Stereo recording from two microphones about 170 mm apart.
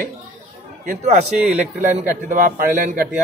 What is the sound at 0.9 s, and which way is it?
A man's voice, 45° right (ahead or behind).